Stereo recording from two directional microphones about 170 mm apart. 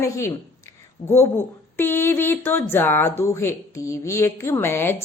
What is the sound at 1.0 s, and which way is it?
Speech, 30° left (ahead or behind).